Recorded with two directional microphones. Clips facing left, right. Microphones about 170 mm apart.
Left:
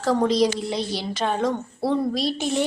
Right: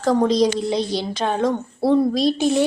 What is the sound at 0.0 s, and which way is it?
A woman's voice, 15° right (ahead or behind).